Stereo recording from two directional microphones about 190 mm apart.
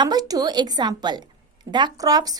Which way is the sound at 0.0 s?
20° right (ahead or behind).